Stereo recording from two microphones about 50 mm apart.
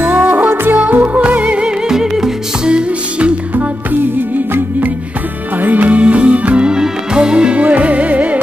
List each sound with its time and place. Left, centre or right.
0.0 s music: right
1.9 s music: centre
3.5 s music: right